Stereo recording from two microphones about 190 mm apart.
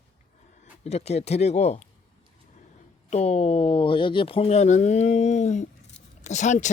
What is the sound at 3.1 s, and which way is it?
Speech, 35° left (ahead or behind).